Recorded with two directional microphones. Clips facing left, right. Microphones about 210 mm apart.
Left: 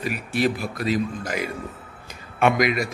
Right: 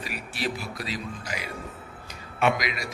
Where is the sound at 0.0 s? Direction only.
50° left (ahead or behind).